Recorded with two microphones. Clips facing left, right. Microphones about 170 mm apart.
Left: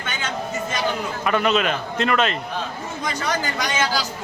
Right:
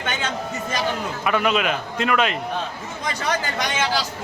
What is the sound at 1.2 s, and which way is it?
A man's voice, 5° right (ahead or behind).